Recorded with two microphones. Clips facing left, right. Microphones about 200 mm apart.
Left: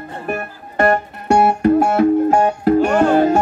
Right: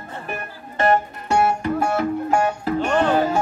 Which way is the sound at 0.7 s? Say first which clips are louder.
Left 3 dB; 65° left (ahead or behind).